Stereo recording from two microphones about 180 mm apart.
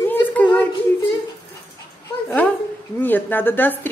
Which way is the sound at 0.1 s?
10° left (ahead or behind).